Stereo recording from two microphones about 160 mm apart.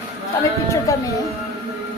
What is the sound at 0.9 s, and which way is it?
Speech, 20° left (ahead or behind).